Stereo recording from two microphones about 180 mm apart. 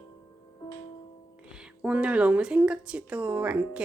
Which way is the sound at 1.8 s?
5° right (ahead or behind).